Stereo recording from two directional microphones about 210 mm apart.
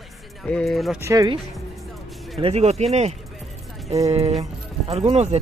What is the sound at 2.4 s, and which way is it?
Speech, 30° right (ahead or behind).